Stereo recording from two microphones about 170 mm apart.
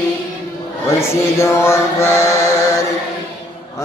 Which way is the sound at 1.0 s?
15° left (ahead or behind).